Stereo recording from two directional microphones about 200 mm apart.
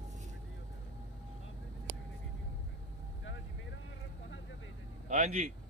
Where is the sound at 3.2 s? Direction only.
70° left (ahead or behind).